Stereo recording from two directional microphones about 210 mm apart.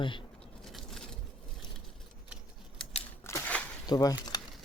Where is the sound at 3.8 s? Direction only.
20° left (ahead or behind).